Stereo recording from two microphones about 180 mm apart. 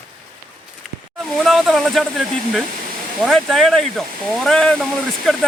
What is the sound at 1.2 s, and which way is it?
Speech, centre (ahead or behind).